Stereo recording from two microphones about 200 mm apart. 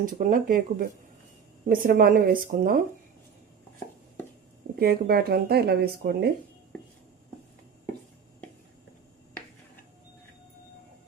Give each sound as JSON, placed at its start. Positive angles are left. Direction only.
{"t": 0.0, "sound": "speech", "side_deg": -40}
{"t": 4.8, "sound": "speech", "side_deg": -50}